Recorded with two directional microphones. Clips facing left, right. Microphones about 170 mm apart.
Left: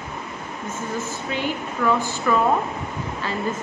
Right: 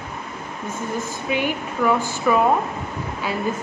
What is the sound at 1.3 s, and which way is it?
A woman's voice, 15° right (ahead or behind).